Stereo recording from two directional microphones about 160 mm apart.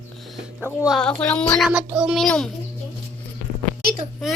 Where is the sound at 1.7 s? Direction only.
10° right (ahead or behind).